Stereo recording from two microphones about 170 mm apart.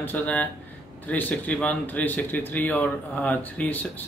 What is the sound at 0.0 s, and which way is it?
A man's voice, 10° left (ahead or behind).